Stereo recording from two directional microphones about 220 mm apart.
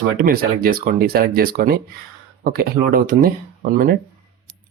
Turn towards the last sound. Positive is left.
turn(degrees=-40)  # may be behind; listen again after turning